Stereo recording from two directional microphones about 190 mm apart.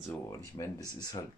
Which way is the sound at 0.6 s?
20° left (ahead or behind).